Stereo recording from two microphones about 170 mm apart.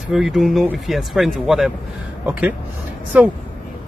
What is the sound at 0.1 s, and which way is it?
Speech, centre (ahead or behind).